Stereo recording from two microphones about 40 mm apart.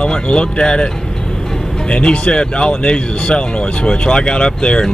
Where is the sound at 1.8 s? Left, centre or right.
Left.